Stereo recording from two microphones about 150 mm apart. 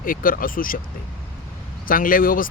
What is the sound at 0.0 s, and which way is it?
Speech, 70° left (ahead or behind).